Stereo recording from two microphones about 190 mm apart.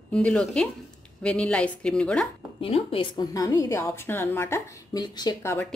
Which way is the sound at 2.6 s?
30° left (ahead or behind).